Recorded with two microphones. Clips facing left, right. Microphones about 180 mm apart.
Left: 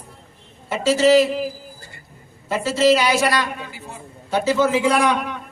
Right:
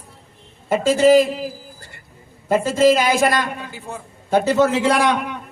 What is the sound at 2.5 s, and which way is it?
Speech, 50° right (ahead or behind).